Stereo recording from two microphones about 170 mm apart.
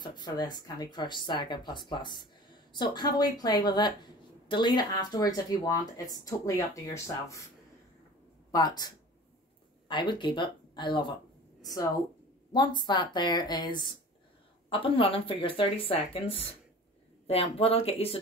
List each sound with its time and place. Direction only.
0.0 s a woman's voice: 25° left (ahead or behind)
8.5 s speech: 25° left (ahead or behind)
12.5 s a woman's voice: 25° left (ahead or behind)